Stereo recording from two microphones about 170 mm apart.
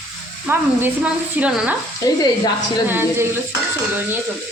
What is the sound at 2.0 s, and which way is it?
Speech, 20° left (ahead or behind).